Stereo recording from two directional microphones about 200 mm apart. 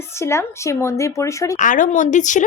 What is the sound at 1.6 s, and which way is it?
Speech, 40° left (ahead or behind).